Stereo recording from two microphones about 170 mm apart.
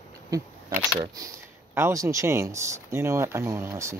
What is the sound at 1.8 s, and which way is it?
Speech, 15° right (ahead or behind).